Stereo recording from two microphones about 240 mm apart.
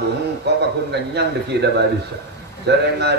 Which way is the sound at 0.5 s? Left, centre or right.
Right.